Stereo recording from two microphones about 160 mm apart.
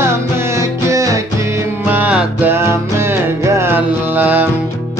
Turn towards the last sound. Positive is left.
turn(degrees=-10)  # may be behind; listen again after turning